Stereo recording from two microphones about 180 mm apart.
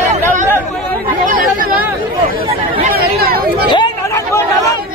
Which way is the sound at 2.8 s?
55° right (ahead or behind).